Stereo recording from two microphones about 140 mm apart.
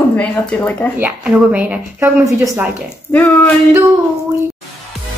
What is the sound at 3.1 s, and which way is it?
Speech, 10° left (ahead or behind).